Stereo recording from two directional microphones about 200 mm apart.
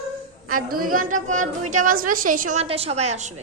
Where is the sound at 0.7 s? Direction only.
45° right (ahead or behind).